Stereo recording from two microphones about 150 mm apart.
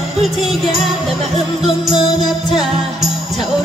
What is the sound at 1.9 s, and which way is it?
Music, 30° left (ahead or behind).